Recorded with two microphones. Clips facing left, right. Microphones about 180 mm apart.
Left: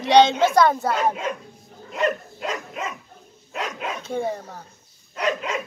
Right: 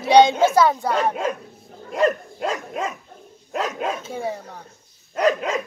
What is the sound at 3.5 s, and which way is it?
Speech, 40° right (ahead or behind).